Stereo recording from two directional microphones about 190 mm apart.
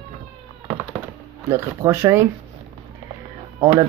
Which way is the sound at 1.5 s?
15° right (ahead or behind).